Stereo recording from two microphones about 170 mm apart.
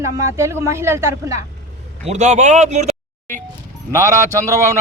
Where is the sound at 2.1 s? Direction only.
45° right (ahead or behind).